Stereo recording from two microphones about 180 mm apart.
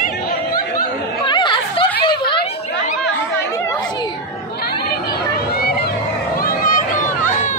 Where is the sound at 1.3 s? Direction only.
25° left (ahead or behind).